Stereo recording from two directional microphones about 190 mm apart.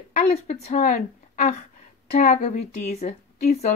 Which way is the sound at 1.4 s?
40° left (ahead or behind).